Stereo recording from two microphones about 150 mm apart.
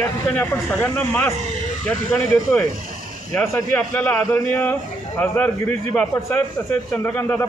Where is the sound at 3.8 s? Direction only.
10° left (ahead or behind).